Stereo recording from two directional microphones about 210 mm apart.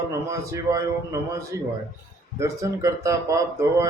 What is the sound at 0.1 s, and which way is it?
Speech, 15° right (ahead or behind).